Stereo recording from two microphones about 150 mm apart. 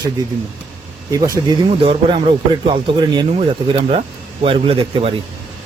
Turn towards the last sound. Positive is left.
turn(degrees=-40)  # may be behind; listen again after turning